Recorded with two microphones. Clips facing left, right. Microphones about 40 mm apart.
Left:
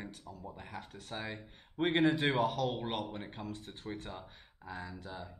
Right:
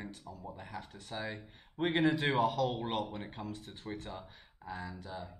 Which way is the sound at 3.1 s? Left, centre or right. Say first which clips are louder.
Even; centre.